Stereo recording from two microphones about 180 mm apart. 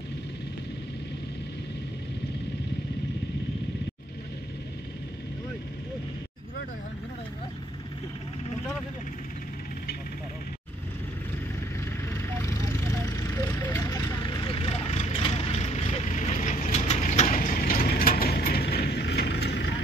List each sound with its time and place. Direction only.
12.1 s vehicle: 15° left (ahead or behind); by 19.7 s 70° left (ahead or behind)